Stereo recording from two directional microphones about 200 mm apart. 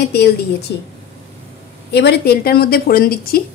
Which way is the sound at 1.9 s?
55° left (ahead or behind).